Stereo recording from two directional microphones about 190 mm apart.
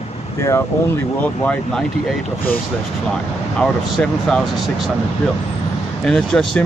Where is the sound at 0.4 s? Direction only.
15° left (ahead or behind).